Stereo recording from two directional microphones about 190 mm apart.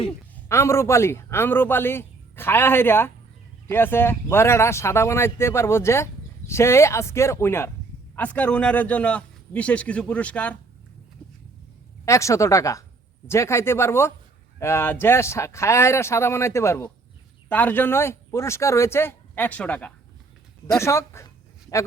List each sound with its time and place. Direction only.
0.4 s speech: 15° left (ahead or behind)
12.0 s speech: 15° left (ahead or behind)
20.7 s a sound: 15° left (ahead or behind)